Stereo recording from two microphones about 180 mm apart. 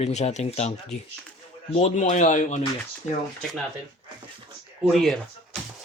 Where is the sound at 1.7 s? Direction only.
40° left (ahead or behind).